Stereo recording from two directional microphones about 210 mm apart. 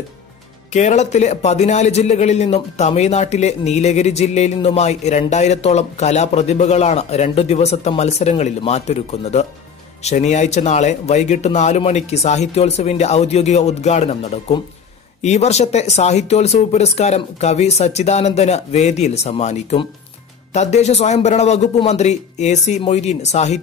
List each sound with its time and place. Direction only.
0.7 s a man's voice: 35° left (ahead or behind)